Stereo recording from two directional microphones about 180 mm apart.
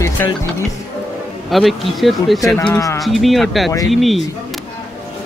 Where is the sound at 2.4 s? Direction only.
10° left (ahead or behind).